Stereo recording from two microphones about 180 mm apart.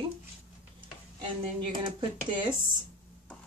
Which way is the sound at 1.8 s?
30° right (ahead or behind).